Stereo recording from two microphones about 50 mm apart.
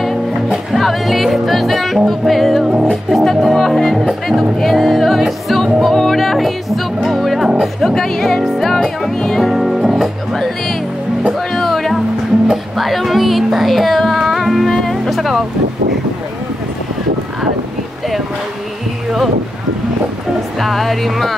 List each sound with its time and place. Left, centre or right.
0.5 s music: centre
2.7 s music: centre
3.1 s music: centre
20.5 s music: centre